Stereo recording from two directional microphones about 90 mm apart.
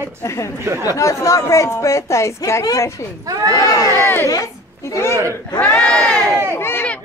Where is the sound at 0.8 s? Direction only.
35° left (ahead or behind).